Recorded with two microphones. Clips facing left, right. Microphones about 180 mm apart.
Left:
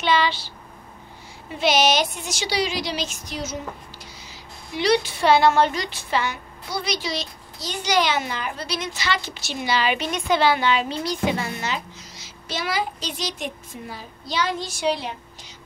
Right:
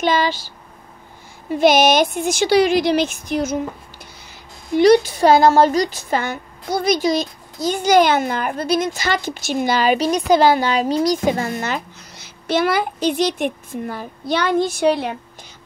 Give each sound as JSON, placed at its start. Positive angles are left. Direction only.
{"t": 0.0, "sound": "a woman's voice", "side_deg": -45}
{"t": 1.5, "sound": "a woman's voice", "side_deg": -50}